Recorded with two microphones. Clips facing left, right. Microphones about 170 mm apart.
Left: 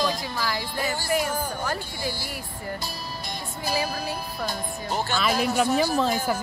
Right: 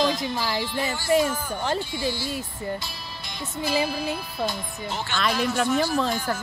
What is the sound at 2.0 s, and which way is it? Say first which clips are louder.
Speech: right 2 dB; 15° left (ahead or behind).